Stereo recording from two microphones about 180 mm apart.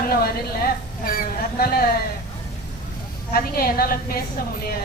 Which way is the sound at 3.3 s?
55° left (ahead or behind).